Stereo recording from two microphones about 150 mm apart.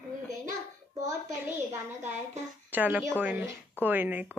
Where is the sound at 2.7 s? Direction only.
10° right (ahead or behind).